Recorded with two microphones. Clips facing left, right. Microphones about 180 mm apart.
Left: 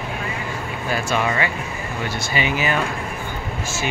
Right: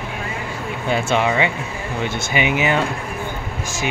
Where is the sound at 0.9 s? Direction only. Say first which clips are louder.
Right 4 dB; 20° right (ahead or behind).